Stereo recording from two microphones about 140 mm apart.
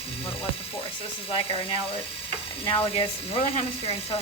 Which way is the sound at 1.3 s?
40° left (ahead or behind).